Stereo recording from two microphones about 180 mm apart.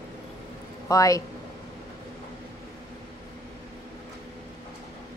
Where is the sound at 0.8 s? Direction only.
20° left (ahead or behind).